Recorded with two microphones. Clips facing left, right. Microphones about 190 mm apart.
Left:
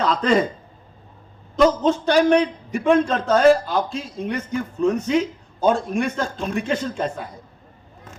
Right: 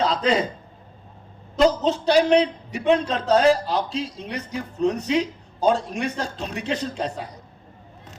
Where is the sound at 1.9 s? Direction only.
50° left (ahead or behind).